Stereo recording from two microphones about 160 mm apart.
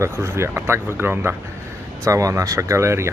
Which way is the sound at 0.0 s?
15° right (ahead or behind).